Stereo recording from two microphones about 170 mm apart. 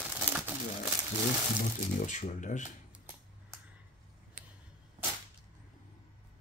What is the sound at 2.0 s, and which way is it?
Speech, 45° left (ahead or behind).